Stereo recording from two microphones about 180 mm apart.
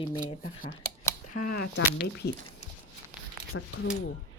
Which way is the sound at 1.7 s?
65° left (ahead or behind).